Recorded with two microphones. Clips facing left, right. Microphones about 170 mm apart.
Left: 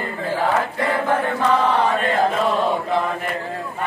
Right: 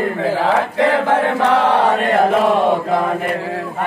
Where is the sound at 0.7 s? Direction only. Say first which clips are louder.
Right 6 dB; 90° right.